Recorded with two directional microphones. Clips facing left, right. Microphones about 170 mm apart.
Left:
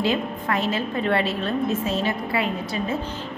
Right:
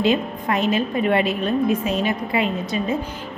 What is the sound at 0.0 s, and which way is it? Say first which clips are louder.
A woman's voice: right 4 dB; 20° right (ahead or behind).